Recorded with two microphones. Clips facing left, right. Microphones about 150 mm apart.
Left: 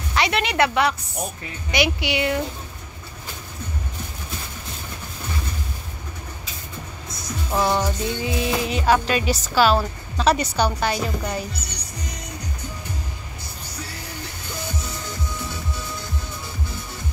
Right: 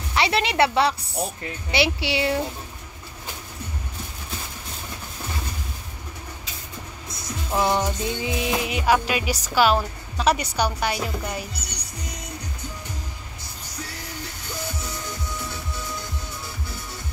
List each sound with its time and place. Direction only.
0.1 s a woman's voice: 25° right (ahead or behind)
7.5 s speech: 15° right (ahead or behind)